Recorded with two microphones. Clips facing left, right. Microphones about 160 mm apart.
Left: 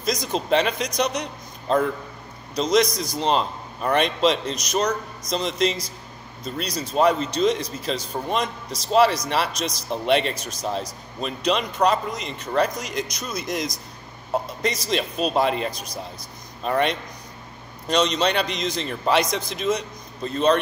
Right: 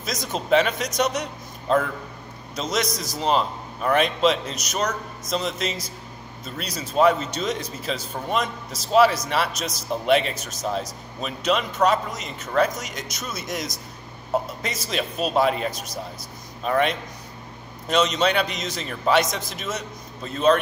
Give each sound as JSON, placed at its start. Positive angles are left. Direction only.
{"t": 0.0, "sound": "speech", "side_deg": -5}